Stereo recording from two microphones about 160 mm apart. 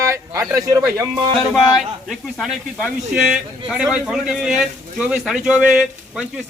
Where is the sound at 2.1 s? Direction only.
Centre (ahead or behind).